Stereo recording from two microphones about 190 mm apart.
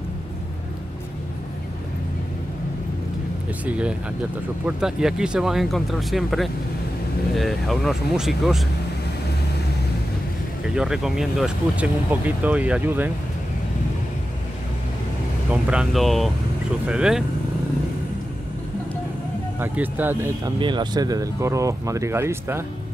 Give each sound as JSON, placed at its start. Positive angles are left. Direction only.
{"t": 3.6, "sound": "speech", "side_deg": -5}
{"t": 10.7, "sound": "speech", "side_deg": -5}
{"t": 15.5, "sound": "speech", "side_deg": -5}
{"t": 19.6, "sound": "speech", "side_deg": -10}
{"t": 20.5, "sound": "speech", "side_deg": -25}